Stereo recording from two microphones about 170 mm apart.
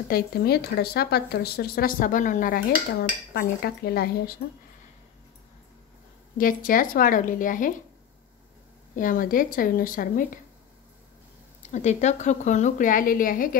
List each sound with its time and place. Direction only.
0.1 s speech: 65° left (ahead or behind)
6.3 s a woman's voice: 55° left (ahead or behind)
8.9 s a woman's voice: 50° left (ahead or behind)
11.7 s a woman's voice: 40° left (ahead or behind)